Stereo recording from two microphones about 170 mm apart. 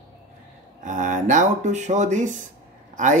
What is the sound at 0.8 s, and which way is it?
A man's voice, 45° right (ahead or behind).